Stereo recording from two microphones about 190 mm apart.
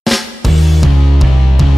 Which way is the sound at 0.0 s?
Centre (ahead or behind).